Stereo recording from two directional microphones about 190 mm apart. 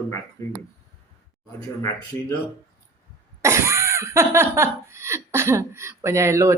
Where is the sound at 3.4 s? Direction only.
15° right (ahead or behind).